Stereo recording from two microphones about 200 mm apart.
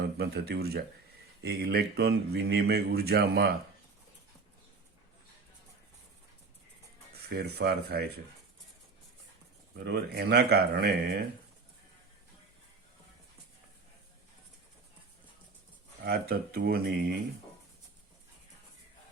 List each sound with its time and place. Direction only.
0.2 s speech: 50° right (ahead or behind)
7.3 s speech: 55° right (ahead or behind)
9.7 s speech: 55° right (ahead or behind)
16.0 s speech: 50° right (ahead or behind)